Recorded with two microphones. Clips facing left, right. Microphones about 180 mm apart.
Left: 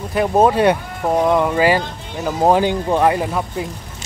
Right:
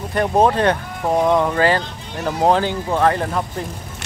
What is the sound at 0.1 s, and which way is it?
Speech, 5° left (ahead or behind).